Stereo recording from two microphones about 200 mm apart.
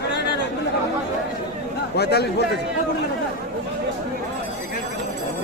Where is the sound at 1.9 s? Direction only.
55° left (ahead or behind).